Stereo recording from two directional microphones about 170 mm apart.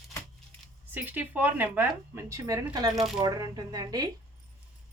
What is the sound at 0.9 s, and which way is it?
Speech, 10° right (ahead or behind).